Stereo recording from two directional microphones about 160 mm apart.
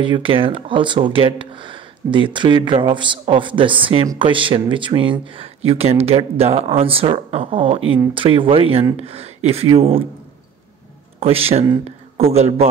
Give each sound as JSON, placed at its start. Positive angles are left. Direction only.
{"t": 0.0, "sound": "speech", "side_deg": -30}
{"t": 11.1, "sound": "speech", "side_deg": -35}